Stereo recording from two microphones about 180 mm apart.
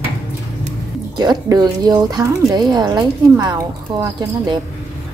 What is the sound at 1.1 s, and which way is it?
Speech, 20° right (ahead or behind).